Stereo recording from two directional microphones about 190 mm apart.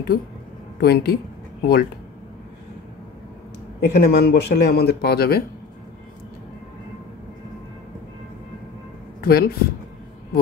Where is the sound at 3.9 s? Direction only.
55° left (ahead or behind).